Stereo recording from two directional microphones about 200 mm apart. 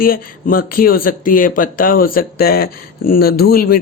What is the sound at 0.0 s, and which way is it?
Speech, 45° left (ahead or behind).